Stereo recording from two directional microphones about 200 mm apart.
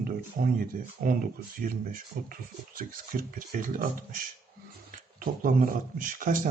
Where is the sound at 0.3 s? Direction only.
45° right (ahead or behind).